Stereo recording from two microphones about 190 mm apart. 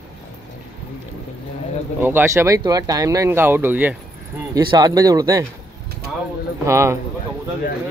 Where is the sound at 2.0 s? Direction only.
10° right (ahead or behind).